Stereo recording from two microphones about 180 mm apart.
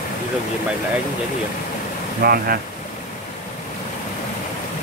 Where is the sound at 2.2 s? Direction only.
55° right (ahead or behind).